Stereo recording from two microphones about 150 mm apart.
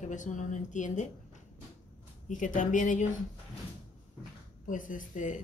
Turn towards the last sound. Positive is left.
turn(degrees=55)  # may be behind; listen again after turning